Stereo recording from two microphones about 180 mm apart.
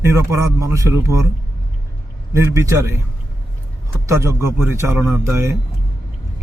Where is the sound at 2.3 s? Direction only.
15° right (ahead or behind).